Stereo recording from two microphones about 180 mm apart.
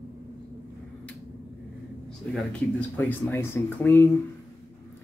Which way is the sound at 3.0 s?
10° left (ahead or behind).